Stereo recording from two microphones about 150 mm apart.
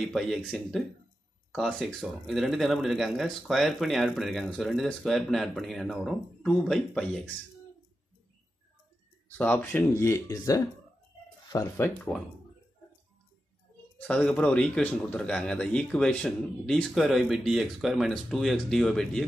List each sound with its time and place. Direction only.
0.1 s speech: centre (ahead or behind)
9.4 s speech: 15° left (ahead or behind)
13.9 s speech: 5° left (ahead or behind)